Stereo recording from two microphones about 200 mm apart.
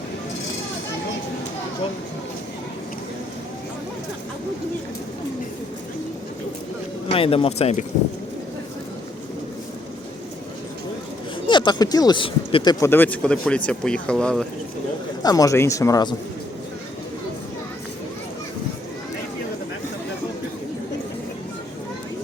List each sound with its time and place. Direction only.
7.1 s speech: 30° left (ahead or behind)
11.4 s speech: 20° left (ahead or behind)
12.8 s speech: 10° left (ahead or behind)
15.2 s speech: 20° left (ahead or behind)